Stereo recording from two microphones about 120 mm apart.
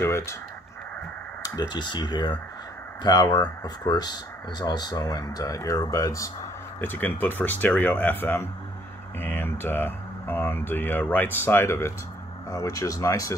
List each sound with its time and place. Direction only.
0.0 s a sound: 20° left (ahead or behind)
1.4 s speech: 35° left (ahead or behind)
6.8 s speech: 15° left (ahead or behind)